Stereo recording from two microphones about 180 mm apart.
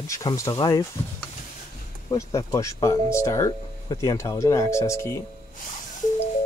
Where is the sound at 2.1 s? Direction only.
15° left (ahead or behind).